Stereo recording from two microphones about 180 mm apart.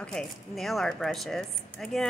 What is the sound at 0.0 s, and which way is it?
Speech, 5° left (ahead or behind).